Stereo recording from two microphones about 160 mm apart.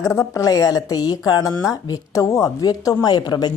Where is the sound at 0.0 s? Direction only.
20° left (ahead or behind).